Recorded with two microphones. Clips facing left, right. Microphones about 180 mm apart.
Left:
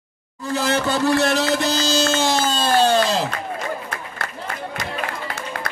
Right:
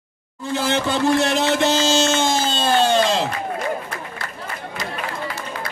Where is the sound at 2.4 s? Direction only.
40° left (ahead or behind).